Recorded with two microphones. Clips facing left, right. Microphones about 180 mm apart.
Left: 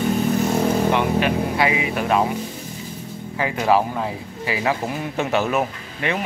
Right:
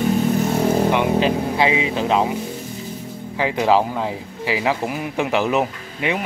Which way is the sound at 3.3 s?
10° right (ahead or behind).